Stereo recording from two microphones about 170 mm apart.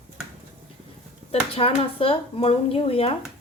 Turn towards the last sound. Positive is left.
turn(degrees=35)  # may be behind; listen again after turning